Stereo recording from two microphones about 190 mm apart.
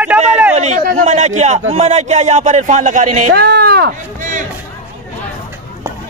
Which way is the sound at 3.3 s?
55° right (ahead or behind).